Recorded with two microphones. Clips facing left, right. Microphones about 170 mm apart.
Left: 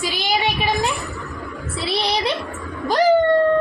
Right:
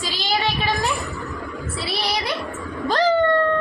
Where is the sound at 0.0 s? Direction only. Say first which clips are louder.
Left 2 dB; 15° left (ahead or behind).